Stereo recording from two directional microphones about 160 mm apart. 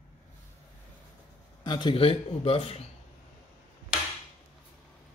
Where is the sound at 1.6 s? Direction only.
25° left (ahead or behind).